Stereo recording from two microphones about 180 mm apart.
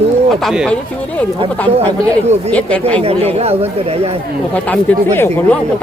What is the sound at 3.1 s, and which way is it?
Speech, 35° right (ahead or behind).